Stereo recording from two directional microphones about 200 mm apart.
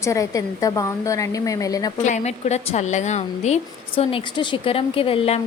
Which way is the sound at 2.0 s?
35° left (ahead or behind).